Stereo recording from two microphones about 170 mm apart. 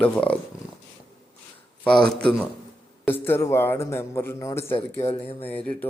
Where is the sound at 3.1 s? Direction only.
15° left (ahead or behind).